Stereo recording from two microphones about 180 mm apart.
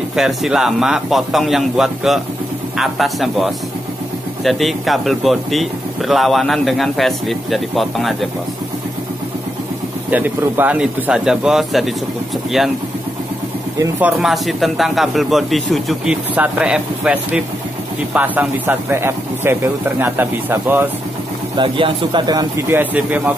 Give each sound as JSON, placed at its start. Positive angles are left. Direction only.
{"t": 0.1, "sound": "speech", "side_deg": -5}
{"t": 10.1, "sound": "speech", "side_deg": -10}
{"t": 13.7, "sound": "speech", "side_deg": -10}
{"t": 14.1, "sound": "speech", "side_deg": 0}
{"t": 21.5, "sound": "a man's voice", "side_deg": -25}